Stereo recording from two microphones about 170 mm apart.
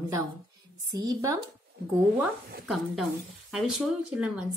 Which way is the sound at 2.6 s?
Centre (ahead or behind).